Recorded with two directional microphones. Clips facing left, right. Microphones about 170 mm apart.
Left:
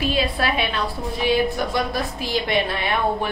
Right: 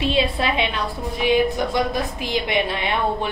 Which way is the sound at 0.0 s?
25° right (ahead or behind).